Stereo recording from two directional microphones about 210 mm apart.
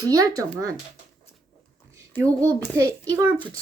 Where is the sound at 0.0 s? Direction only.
15° right (ahead or behind).